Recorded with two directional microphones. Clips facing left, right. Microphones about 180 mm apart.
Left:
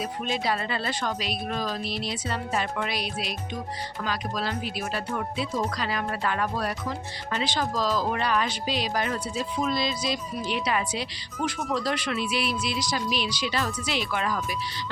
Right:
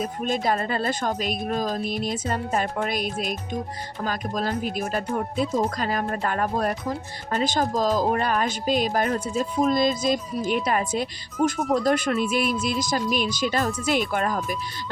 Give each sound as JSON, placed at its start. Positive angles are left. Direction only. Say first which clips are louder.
{"t": 0.0, "sound": "speech", "louder": "right 4 dB", "side_deg": -45}